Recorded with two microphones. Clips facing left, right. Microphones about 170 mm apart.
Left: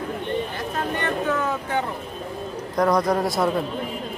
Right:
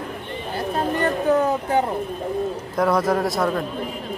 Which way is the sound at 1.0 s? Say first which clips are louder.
Right 6 dB; 35° right (ahead or behind).